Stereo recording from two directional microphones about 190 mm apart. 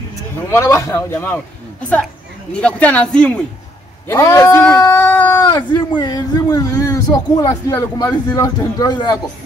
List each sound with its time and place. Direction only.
0.5 s a man's voice: 15° left (ahead or behind)
5.5 s speech: 25° left (ahead or behind)